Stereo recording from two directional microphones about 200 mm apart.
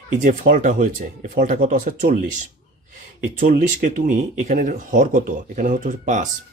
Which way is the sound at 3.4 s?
40° right (ahead or behind).